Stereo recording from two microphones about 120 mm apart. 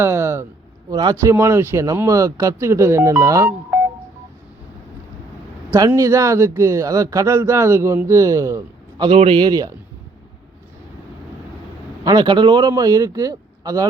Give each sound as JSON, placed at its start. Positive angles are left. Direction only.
{"t": 0.0, "sound": "speech", "side_deg": -20}
{"t": 6.0, "sound": "speech", "side_deg": -25}
{"t": 9.0, "sound": "a man's voice", "side_deg": -50}
{"t": 9.4, "sound": "speech", "side_deg": -30}
{"t": 12.0, "sound": "speech", "side_deg": -35}